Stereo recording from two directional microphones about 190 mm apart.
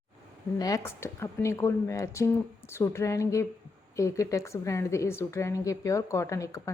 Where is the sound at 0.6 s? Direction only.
15° left (ahead or behind).